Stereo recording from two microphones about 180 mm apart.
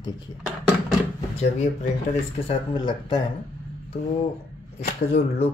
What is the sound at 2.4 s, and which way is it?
Speech, 25° left (ahead or behind).